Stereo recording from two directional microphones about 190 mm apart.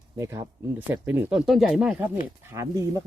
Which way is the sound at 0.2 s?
15° right (ahead or behind).